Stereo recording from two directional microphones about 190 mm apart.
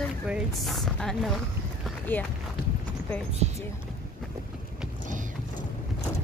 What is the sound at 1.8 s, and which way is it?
Run, 10° left (ahead or behind).